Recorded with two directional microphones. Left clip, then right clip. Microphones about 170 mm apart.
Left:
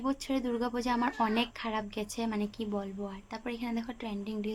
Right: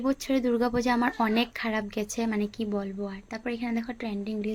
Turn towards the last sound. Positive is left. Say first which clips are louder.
# right 5 dB
turn(degrees=-20)  # may be behind; listen again after turning